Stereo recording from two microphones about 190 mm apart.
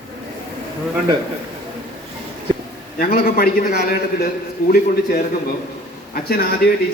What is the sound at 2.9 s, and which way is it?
A man's voice, 50° left (ahead or behind).